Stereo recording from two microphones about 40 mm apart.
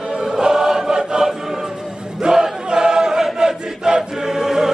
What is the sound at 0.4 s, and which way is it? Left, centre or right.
Choir, centre.